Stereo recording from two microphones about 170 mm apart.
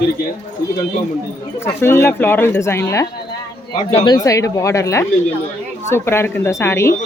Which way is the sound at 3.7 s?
35° left (ahead or behind).